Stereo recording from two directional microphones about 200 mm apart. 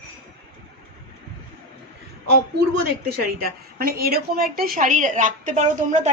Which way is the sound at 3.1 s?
50° right (ahead or behind).